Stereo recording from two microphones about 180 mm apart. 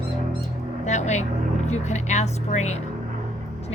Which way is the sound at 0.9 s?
40° left (ahead or behind).